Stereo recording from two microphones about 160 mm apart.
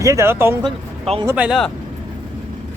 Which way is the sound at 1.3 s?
10° right (ahead or behind).